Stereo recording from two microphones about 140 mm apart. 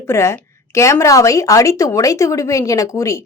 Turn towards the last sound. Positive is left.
turn(degrees=25)  # may be behind; listen again after turning